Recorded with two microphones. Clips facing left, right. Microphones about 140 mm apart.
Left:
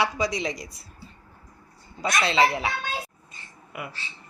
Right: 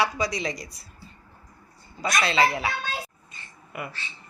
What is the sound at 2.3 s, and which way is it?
Speech, 20° left (ahead or behind).